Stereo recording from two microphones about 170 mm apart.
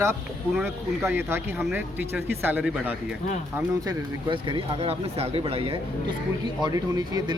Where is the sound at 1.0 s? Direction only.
15° right (ahead or behind).